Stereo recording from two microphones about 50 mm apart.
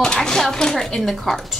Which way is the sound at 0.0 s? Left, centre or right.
Centre.